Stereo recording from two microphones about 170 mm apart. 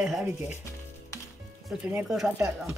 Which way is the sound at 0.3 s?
15° right (ahead or behind).